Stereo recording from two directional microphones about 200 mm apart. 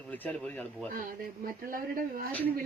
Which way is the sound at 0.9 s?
45° right (ahead or behind).